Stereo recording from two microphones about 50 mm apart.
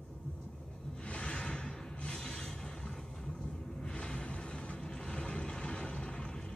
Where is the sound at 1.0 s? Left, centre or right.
Left.